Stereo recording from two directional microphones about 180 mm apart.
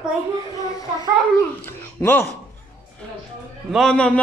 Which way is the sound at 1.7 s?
10° left (ahead or behind).